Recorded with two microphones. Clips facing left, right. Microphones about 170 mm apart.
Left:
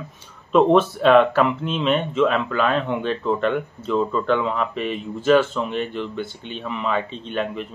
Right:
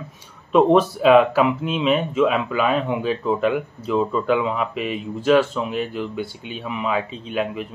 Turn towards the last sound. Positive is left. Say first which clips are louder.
# right 1 dB
turn(degrees=-5)  # may be behind; listen again after turning